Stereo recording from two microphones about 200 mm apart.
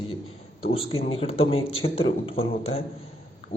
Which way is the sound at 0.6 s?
30° left (ahead or behind).